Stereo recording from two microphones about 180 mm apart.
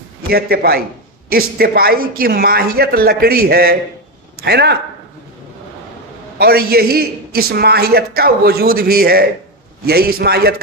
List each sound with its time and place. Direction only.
0.3 s a man's voice: 60° right (ahead or behind)
6.4 s a man's voice: 60° right (ahead or behind)